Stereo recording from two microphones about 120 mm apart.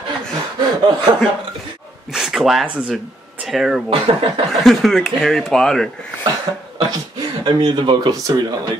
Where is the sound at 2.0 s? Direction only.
5° right (ahead or behind).